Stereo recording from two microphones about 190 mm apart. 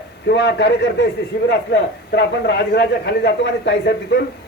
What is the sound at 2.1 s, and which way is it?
A man's voice, 65° left (ahead or behind).